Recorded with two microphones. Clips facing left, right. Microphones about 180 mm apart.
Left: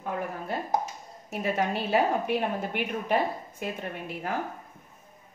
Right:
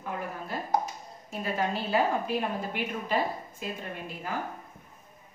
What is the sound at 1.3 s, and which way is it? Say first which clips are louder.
Speech: left 2 dB; 70° left (ahead or behind).